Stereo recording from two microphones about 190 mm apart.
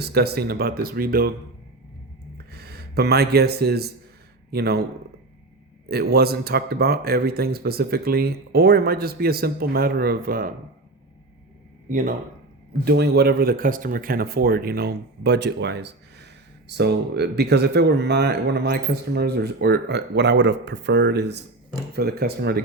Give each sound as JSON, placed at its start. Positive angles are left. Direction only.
{"t": 0.0, "sound": "speech", "side_deg": -55}
{"t": 2.5, "sound": "speech", "side_deg": -55}
{"t": 5.9, "sound": "speech", "side_deg": -55}
{"t": 11.9, "sound": "speech", "side_deg": -45}
{"t": 12.8, "sound": "speech", "side_deg": -60}